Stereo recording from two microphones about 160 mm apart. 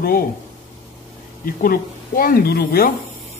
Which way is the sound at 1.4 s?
60° left (ahead or behind).